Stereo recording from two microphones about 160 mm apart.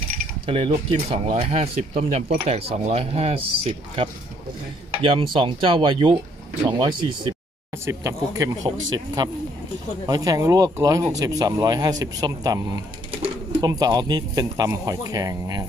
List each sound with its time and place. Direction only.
0.5 s speech: 35° right (ahead or behind)
7.7 s speech: 15° right (ahead or behind)
10.0 s speech: 25° right (ahead or behind)